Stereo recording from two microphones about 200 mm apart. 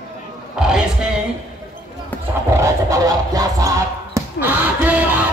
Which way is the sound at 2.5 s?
15° right (ahead or behind).